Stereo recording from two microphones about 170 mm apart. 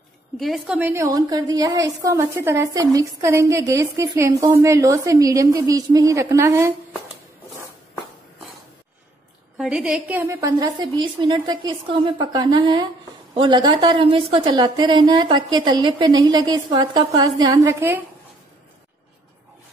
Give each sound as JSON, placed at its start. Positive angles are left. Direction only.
{"t": 0.4, "sound": "a woman's voice", "side_deg": 0}
{"t": 0.7, "sound": "a woman's voice", "side_deg": -15}
{"t": 9.6, "sound": "a woman's voice", "side_deg": -5}